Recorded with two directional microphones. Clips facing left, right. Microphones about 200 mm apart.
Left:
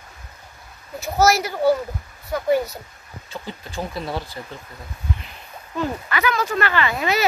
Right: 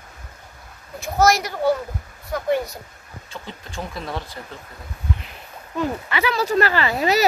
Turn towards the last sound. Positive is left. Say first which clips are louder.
# right 2 dB
turn(degrees=-35)  # may be behind; listen again after turning